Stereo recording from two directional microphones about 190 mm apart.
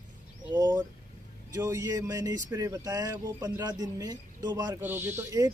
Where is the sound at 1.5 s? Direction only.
15° right (ahead or behind).